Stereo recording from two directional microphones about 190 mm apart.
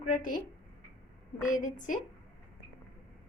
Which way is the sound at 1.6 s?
40° left (ahead or behind).